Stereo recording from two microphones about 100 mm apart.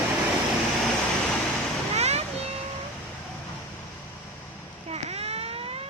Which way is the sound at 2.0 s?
90° right.